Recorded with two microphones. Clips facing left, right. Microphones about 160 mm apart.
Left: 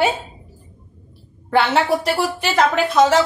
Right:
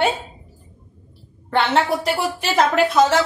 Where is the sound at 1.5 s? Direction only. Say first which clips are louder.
Left 2 dB; centre (ahead or behind).